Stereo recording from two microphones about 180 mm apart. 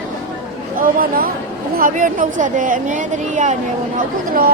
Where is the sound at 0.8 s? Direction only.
55° right (ahead or behind).